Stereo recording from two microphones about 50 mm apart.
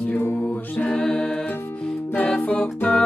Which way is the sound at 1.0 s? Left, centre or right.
Centre.